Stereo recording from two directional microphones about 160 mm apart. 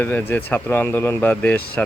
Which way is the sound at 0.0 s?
10° left (ahead or behind).